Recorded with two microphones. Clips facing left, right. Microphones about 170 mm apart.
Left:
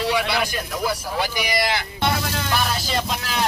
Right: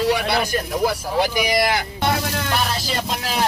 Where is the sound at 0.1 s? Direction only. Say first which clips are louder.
Right 3 dB; 45° right (ahead or behind).